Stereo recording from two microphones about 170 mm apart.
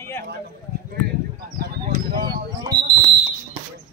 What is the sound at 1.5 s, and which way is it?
Speech, 60° right (ahead or behind).